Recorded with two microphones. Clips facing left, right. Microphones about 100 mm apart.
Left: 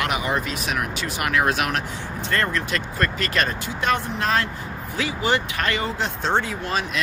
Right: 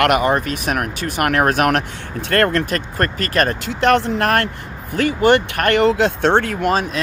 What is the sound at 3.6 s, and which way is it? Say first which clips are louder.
Speech: right 8 dB; 70° right (ahead or behind).